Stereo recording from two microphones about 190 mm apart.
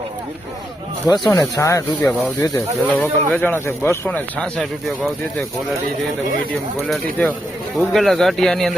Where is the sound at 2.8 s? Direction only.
5° left (ahead or behind).